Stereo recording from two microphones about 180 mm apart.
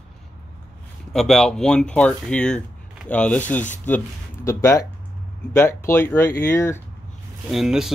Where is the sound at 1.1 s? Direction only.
Centre (ahead or behind).